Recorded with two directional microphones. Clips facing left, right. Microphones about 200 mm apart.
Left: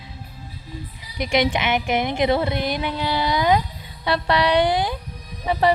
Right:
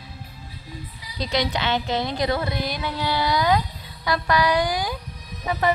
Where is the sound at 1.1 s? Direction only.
20° left (ahead or behind).